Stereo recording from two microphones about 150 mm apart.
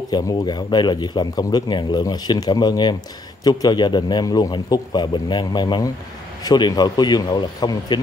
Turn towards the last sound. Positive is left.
turn(degrees=30)  # may be behind; listen again after turning